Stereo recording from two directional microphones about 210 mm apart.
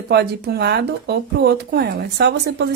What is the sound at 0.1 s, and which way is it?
Speech, 50° right (ahead or behind).